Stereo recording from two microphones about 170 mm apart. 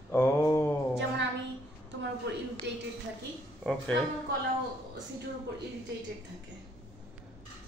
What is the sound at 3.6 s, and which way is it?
Speech, 5° left (ahead or behind).